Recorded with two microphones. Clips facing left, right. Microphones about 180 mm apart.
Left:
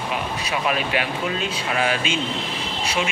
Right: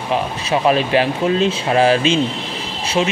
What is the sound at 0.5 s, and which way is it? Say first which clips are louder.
Speech: right 9 dB; 30° right (ahead or behind).